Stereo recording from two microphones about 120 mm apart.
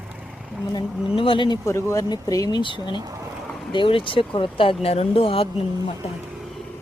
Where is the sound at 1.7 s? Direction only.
25° left (ahead or behind); by 5.9 s 50° left (ahead or behind).